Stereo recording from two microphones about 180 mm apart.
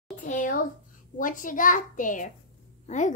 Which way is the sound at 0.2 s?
45° left (ahead or behind).